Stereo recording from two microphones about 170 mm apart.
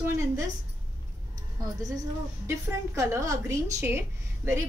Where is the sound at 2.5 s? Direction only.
15° right (ahead or behind).